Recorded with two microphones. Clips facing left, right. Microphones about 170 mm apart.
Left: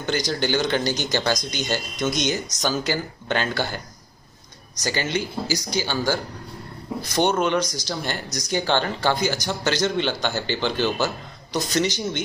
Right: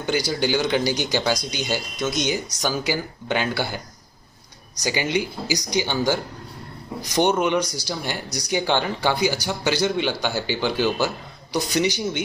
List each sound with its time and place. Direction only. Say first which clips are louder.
0.0 s speech: right 1 dB; 10° right (ahead or behind)
4.8 s speech: right 2 dB; 15° right (ahead or behind)